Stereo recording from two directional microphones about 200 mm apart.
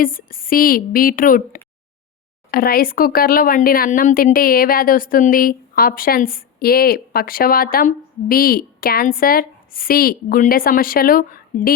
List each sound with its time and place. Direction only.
0.0 s speech: 45° left (ahead or behind)